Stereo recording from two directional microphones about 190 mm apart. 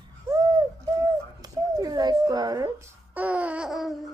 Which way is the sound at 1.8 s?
20° right (ahead or behind).